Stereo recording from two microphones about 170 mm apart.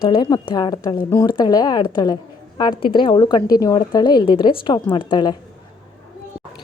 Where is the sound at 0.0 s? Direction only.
30° left (ahead or behind).